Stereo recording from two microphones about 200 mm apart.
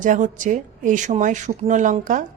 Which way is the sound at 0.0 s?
40° right (ahead or behind).